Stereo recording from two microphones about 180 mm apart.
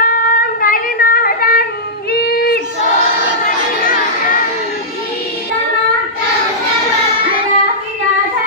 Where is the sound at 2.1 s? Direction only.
60° left (ahead or behind).